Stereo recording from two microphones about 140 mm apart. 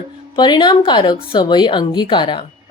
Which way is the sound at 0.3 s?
30° left (ahead or behind).